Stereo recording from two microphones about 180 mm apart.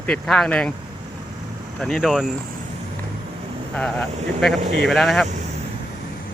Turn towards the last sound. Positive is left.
turn(degrees=0)  # may be behind; listen again after turning